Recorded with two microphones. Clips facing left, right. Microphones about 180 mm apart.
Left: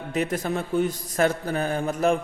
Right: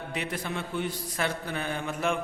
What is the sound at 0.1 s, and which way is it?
A man's voice, 45° left (ahead or behind).